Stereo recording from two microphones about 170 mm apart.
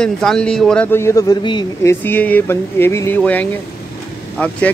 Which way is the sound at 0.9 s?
15° left (ahead or behind).